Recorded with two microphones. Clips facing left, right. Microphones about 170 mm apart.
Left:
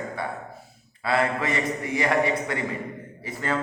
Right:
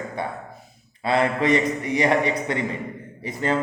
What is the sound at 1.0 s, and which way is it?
A man's voice, 20° right (ahead or behind).